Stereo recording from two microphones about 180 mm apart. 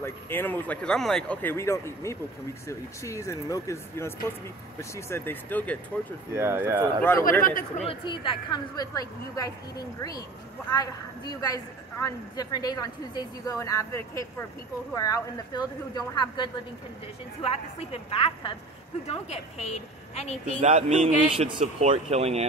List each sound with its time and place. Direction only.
0.0 s speech: 10° left (ahead or behind)
6.3 s speech: 15° right (ahead or behind)
7.0 s speech: 10° left (ahead or behind)
7.4 s speech: 50° left (ahead or behind)
7.8 s a woman's voice: 30° left (ahead or behind)
17.4 s a woman's voice: 35° left (ahead or behind)
20.6 s a man's voice: 35° right (ahead or behind)